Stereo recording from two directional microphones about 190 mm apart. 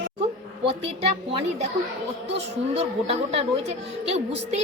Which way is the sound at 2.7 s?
35° right (ahead or behind).